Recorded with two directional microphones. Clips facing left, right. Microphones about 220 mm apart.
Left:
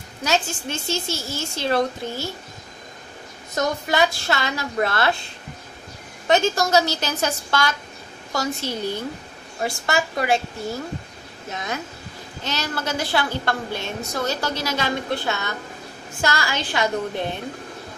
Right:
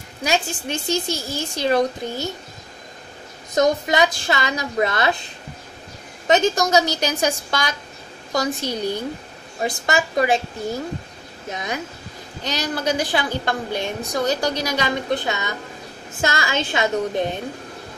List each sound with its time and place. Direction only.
0.2 s a woman's voice: 15° right (ahead or behind)
3.5 s a woman's voice: 15° right (ahead or behind)
6.2 s a woman's voice: 15° right (ahead or behind)